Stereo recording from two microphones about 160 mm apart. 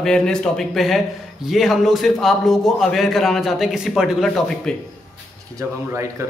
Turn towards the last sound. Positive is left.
turn(degrees=-15)  # may be behind; listen again after turning